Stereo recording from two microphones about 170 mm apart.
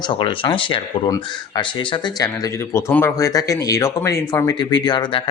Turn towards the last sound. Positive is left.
turn(degrees=25)  # may be behind; listen again after turning